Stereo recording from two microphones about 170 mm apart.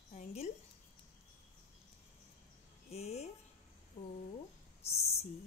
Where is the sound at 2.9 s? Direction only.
40° left (ahead or behind).